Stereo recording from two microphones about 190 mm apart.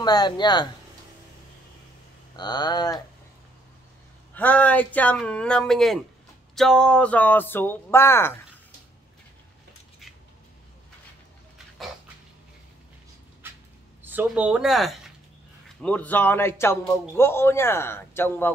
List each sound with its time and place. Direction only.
0.0 s speech: 20° left (ahead or behind)
2.3 s speech: 20° left (ahead or behind)
4.4 s a man's voice: 10° left (ahead or behind)
14.0 s a man's voice: 10° right (ahead or behind); by 18.5 s 10° left (ahead or behind)